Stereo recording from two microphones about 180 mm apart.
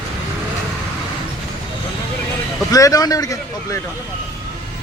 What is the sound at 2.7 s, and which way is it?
A man's voice, 20° left (ahead or behind).